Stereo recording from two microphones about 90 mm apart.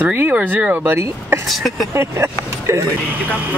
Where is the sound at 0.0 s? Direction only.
15° right (ahead or behind).